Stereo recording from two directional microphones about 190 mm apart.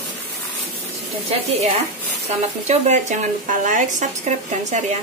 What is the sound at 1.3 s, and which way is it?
Speech, 30° right (ahead or behind).